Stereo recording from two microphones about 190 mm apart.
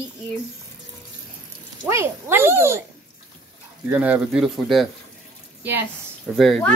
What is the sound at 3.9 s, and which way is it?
Speech, 5° right (ahead or behind).